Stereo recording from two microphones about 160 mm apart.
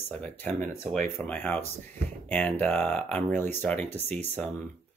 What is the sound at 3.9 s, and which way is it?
Speech, 40° right (ahead or behind).